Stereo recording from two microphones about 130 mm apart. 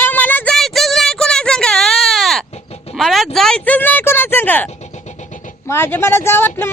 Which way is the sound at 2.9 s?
Centre (ahead or behind).